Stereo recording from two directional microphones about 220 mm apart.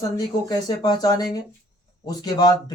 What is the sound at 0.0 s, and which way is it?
Speech, 20° left (ahead or behind).